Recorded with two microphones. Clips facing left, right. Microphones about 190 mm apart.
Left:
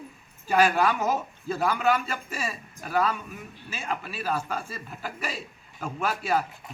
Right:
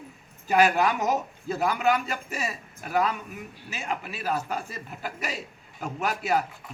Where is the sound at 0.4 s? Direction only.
15° right (ahead or behind).